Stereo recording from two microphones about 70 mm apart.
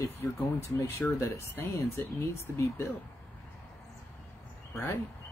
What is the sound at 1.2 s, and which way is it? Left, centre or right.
Speech, left.